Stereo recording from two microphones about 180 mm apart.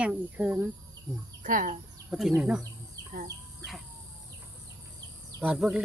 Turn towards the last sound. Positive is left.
turn(degrees=-5)  # may be behind; listen again after turning